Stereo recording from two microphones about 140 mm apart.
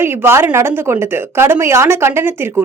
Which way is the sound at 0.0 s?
15° right (ahead or behind).